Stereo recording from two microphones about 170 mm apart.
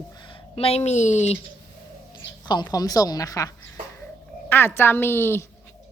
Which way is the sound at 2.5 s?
25° left (ahead or behind).